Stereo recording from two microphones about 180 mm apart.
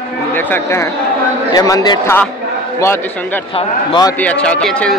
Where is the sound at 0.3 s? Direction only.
10° left (ahead or behind).